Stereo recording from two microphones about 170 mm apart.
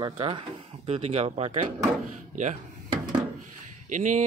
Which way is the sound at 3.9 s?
45° right (ahead or behind).